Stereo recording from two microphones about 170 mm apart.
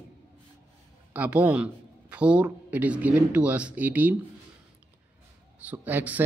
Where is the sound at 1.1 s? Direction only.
10° right (ahead or behind).